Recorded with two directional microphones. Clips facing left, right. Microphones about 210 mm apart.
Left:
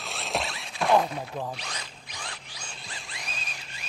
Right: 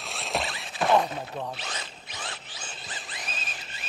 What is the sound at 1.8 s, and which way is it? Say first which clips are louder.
Zipper: right 2 dB; 25° right (ahead or behind).